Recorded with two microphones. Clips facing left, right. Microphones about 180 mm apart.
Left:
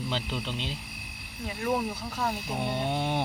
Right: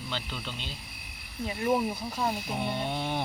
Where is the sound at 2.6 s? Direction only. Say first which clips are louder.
Left 3 dB; 15° left (ahead or behind).